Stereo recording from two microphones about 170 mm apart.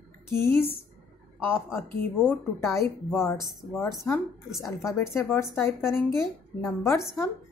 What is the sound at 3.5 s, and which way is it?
Speech, centre (ahead or behind).